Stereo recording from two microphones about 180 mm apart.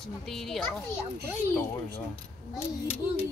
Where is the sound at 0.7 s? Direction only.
15° left (ahead or behind).